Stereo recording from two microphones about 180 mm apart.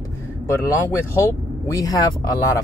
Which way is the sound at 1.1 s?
15° left (ahead or behind).